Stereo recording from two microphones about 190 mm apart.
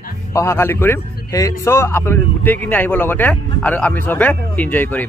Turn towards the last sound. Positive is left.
turn(degrees=10)  # may be behind; listen again after turning